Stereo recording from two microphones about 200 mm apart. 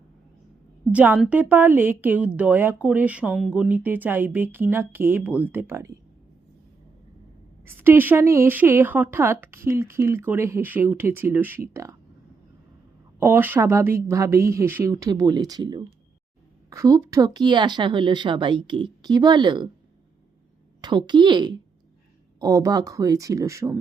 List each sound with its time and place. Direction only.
0.9 s speech: 5° right (ahead or behind)
7.6 s speech: 10° right (ahead or behind)
13.1 s a woman's voice: 10° right (ahead or behind)
20.8 s a woman's voice: 20° right (ahead or behind)